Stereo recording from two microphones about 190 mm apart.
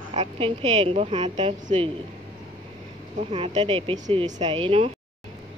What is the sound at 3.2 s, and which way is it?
Speech, 30° right (ahead or behind).